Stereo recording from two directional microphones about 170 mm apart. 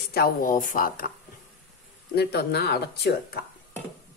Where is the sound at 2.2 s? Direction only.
75° left (ahead or behind).